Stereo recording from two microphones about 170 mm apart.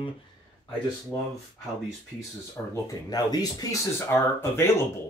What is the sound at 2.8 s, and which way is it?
Speech, 20° left (ahead or behind).